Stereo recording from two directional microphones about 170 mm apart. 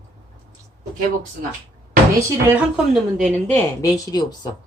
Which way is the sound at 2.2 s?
15° right (ahead or behind).